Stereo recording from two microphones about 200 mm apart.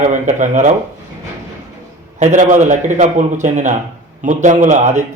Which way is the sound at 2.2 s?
40° right (ahead or behind).